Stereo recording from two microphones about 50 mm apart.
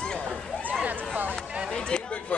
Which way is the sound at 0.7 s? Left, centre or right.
Right.